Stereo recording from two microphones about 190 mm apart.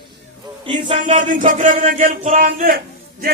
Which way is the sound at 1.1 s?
40° right (ahead or behind).